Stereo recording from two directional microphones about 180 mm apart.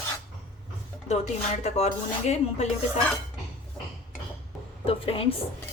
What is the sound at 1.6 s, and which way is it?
Speech, 40° left (ahead or behind).